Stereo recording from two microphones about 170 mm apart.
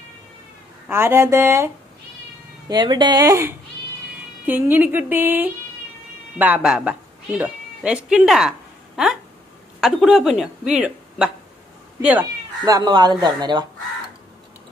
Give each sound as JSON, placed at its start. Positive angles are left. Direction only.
{"t": 0.8, "sound": "speech", "side_deg": -15}
{"t": 2.7, "sound": "speech", "side_deg": -25}
{"t": 12.6, "sound": "speech", "side_deg": -25}